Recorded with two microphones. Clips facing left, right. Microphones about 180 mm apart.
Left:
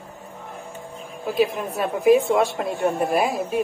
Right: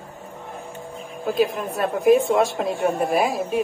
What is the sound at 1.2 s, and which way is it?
A woman's voice, centre (ahead or behind).